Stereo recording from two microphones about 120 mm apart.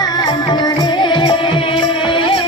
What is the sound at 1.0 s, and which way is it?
Music, 40° left (ahead or behind).